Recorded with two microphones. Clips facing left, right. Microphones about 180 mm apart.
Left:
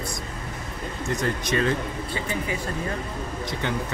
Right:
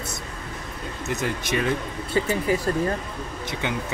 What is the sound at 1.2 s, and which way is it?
Speech, 10° right (ahead or behind).